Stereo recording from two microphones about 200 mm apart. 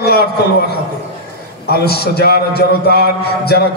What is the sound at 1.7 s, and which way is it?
Speech, 50° left (ahead or behind).